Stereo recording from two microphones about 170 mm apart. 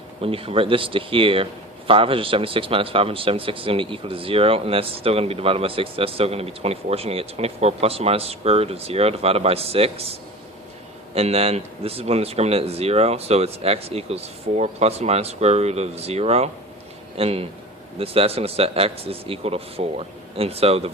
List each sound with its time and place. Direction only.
0.2 s a man's voice: 35° right (ahead or behind)